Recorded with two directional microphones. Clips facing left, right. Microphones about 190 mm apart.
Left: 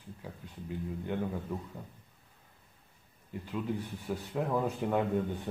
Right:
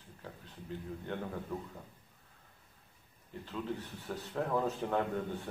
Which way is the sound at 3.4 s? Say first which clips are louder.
Left 4 dB; 10° left (ahead or behind).